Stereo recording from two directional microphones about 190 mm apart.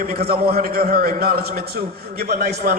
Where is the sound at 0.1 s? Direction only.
55° right (ahead or behind).